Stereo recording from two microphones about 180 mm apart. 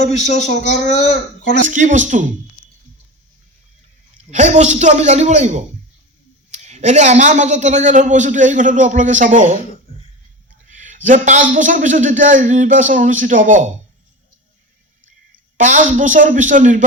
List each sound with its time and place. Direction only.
0.0 s speech: 40° left (ahead or behind)
1.6 s a man's voice: 45° right (ahead or behind)
4.3 s a woman's voice: 40° right (ahead or behind)
10.7 s a man's voice: 45° right (ahead or behind)
15.5 s a man's voice: 45° right (ahead or behind)